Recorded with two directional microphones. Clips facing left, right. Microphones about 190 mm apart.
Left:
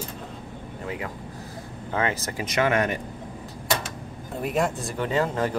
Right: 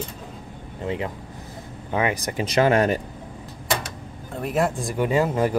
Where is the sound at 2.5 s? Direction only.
35° right (ahead or behind).